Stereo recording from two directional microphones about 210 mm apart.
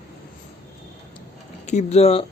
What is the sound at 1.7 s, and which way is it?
Speech, 30° left (ahead or behind).